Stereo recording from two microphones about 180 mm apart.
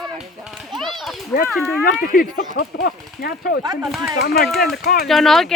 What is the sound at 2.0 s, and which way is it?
Speech, 50° left (ahead or behind).